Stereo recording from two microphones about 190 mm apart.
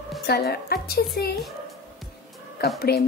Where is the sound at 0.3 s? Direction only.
55° left (ahead or behind).